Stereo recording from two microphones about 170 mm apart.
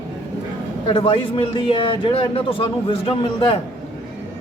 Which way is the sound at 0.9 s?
30° left (ahead or behind).